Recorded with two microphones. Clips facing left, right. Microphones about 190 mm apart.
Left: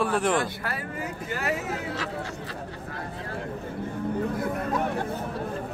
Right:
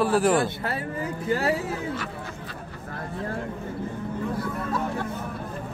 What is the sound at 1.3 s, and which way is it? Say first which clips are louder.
Speech: right 6 dB; 30° right (ahead or behind).